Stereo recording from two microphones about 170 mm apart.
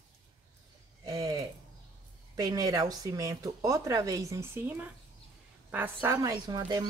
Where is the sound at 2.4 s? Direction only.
20° right (ahead or behind).